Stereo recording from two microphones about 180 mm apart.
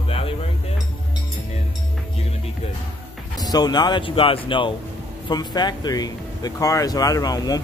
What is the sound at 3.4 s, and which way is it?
Speech, 20° left (ahead or behind).